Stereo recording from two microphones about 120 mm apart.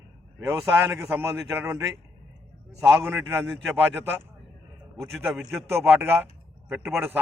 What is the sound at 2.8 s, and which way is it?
A man's voice, 20° right (ahead or behind).